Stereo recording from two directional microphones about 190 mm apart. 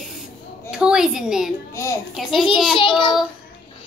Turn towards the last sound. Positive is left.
turn(degrees=25)  # may be behind; listen again after turning